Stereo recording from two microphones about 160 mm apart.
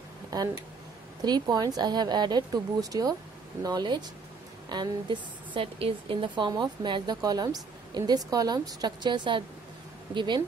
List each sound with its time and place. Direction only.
0.3 s a woman's voice: 20° right (ahead or behind)